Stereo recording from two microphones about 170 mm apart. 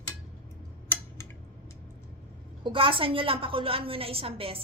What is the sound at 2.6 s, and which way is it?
A woman's voice, 30° right (ahead or behind).